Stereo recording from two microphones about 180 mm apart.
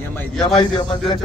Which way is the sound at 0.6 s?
25° left (ahead or behind).